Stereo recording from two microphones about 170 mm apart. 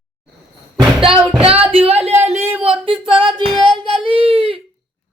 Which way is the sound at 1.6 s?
35° right (ahead or behind).